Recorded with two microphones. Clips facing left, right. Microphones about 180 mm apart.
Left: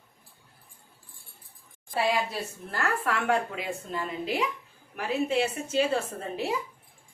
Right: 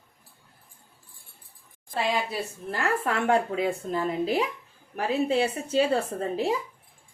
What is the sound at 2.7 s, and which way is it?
A woman's voice, 20° right (ahead or behind).